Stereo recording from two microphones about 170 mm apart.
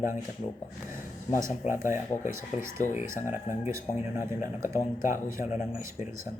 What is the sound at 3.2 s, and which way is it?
Speech, 50° left (ahead or behind).